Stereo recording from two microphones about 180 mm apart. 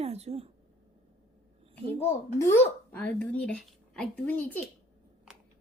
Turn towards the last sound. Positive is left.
turn(degrees=10)  # may be behind; listen again after turning